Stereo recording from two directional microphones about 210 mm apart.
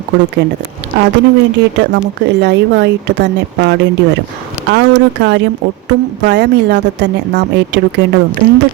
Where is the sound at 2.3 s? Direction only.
55° right (ahead or behind).